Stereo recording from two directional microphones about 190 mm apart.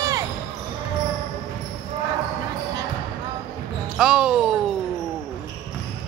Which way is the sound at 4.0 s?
5° right (ahead or behind).